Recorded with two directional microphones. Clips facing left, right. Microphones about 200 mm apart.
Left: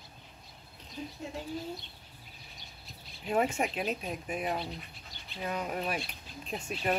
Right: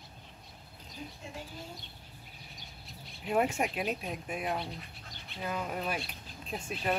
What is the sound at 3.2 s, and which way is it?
Speech, centre (ahead or behind).